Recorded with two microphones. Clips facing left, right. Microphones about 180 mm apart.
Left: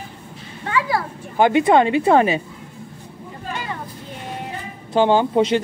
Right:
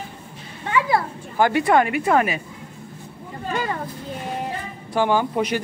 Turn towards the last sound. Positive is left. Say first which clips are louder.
# left 5 dB
turn(degrees=25)  # may be behind; listen again after turning